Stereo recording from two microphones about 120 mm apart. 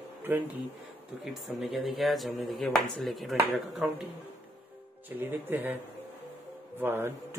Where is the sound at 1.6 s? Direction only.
Centre (ahead or behind).